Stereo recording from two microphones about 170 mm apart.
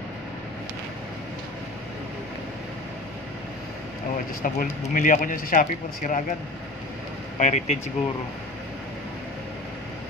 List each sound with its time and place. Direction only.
4.4 s speech: 55° left (ahead or behind)
7.3 s speech: 45° left (ahead or behind)